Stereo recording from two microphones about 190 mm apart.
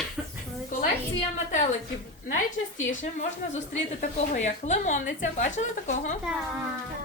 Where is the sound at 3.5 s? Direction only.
40° left (ahead or behind).